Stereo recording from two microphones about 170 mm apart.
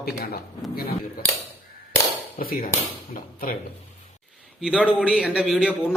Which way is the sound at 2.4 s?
55° left (ahead or behind).